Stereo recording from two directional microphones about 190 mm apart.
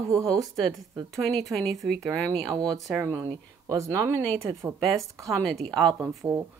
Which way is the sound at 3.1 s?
15° right (ahead or behind).